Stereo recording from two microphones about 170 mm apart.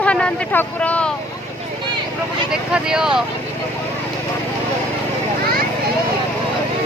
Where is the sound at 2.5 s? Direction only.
5° right (ahead or behind).